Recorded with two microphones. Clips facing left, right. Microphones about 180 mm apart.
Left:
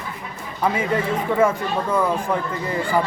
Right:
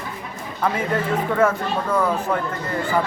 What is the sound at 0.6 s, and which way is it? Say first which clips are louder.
Speech: left 1 dB; 10° left (ahead or behind).